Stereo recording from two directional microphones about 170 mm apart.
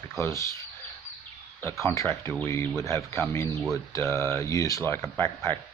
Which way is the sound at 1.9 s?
15° left (ahead or behind).